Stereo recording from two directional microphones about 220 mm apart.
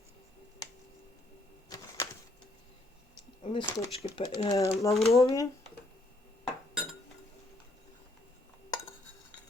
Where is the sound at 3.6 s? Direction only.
15° left (ahead or behind).